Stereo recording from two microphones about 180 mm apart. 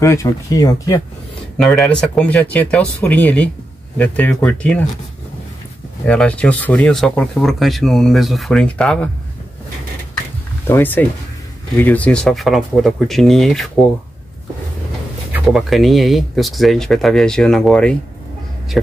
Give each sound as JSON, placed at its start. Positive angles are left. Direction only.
{"t": 0.0, "sound": "speech", "side_deg": 15}
{"t": 1.6, "sound": "speech", "side_deg": 0}
{"t": 6.0, "sound": "speech", "side_deg": 5}
{"t": 10.7, "sound": "speech", "side_deg": 10}
{"t": 15.3, "sound": "speech", "side_deg": 0}